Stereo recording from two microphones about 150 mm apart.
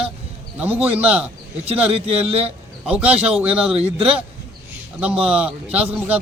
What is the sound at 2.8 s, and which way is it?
Speech, 10° right (ahead or behind).